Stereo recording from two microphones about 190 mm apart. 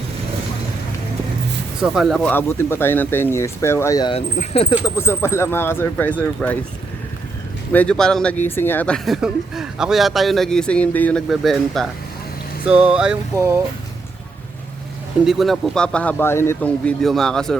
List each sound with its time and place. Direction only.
1.8 s speech: 5° right (ahead or behind); by 4.1 s 15° left (ahead or behind)
4.1 s speech: 30° left (ahead or behind)
4.9 s speech: 15° left (ahead or behind)
7.7 s speech: 5° left (ahead or behind); by 13.6 s 15° right (ahead or behind)
15.2 s speech: centre (ahead or behind)